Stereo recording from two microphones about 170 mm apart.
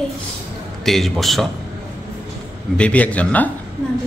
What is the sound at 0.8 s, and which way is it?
Speech, centre (ahead or behind).